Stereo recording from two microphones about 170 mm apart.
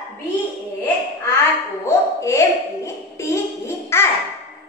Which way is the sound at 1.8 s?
15° left (ahead or behind).